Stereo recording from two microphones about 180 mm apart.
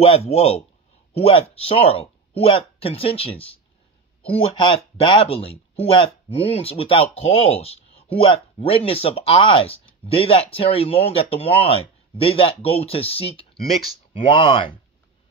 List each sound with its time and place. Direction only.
0.0 s speech: 35° left (ahead or behind)